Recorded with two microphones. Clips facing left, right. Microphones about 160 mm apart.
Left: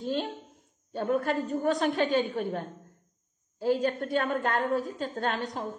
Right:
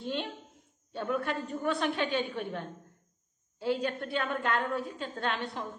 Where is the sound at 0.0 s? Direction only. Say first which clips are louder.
Left 4 dB; 40° left (ahead or behind).